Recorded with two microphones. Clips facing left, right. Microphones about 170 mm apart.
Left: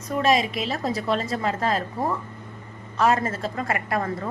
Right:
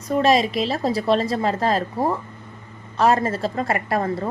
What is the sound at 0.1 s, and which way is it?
A woman's voice, 35° right (ahead or behind).